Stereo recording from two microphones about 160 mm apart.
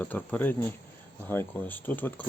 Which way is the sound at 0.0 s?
10° left (ahead or behind).